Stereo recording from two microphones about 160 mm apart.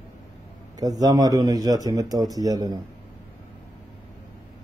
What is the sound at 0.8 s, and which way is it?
Speech, 25° right (ahead or behind).